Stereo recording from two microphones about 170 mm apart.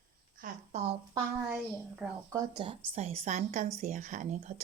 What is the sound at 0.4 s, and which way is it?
Speech, 50° right (ahead or behind).